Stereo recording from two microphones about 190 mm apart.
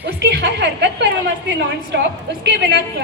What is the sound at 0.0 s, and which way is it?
A woman's voice, 60° right (ahead or behind).